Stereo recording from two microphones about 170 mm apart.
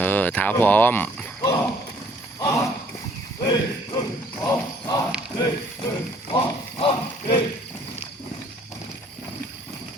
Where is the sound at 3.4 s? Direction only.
25° left (ahead or behind).